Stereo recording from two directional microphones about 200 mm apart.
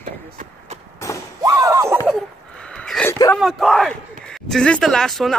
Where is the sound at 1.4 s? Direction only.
15° right (ahead or behind).